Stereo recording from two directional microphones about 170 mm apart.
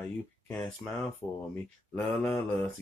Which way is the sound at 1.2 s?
5° left (ahead or behind).